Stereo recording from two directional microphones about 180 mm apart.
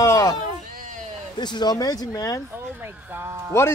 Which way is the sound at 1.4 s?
25° left (ahead or behind).